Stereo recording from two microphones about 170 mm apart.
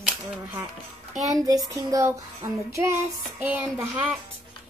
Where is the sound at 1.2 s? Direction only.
20° right (ahead or behind).